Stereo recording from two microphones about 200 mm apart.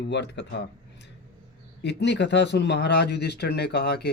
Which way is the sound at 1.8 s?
55° left (ahead or behind).